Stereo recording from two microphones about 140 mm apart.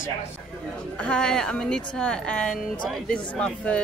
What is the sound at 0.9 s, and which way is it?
A man's voice, 5° left (ahead or behind).